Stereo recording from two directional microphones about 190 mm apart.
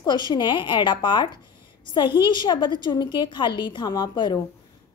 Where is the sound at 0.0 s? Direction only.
25° left (ahead or behind).